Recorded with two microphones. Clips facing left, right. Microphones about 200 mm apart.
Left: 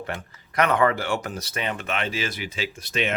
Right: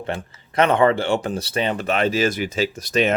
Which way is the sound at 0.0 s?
25° right (ahead or behind).